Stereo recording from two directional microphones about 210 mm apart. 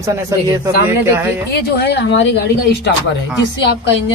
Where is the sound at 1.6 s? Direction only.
50° left (ahead or behind).